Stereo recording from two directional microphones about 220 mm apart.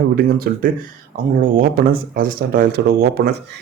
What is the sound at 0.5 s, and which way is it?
Speech, 45° right (ahead or behind).